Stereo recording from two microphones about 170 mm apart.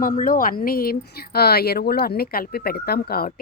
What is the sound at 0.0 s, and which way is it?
Speech, 55° left (ahead or behind).